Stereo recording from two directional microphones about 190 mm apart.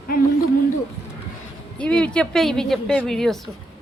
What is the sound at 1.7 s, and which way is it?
Speech, 5° left (ahead or behind).